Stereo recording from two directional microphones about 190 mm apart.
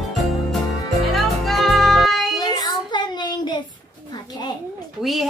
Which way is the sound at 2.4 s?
20° left (ahead or behind).